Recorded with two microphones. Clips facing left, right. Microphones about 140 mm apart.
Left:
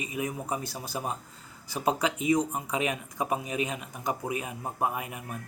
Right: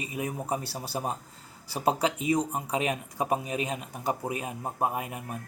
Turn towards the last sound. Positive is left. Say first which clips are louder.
# right 1 dB
turn(degrees=-40)  # may be behind; listen again after turning